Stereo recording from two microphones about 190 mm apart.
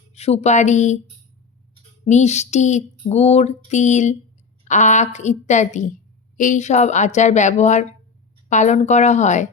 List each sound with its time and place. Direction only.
0.1 s speech: 35° left (ahead or behind)
2.0 s speech: 35° left (ahead or behind)